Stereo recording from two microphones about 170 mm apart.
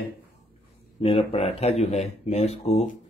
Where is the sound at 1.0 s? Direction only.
35° left (ahead or behind).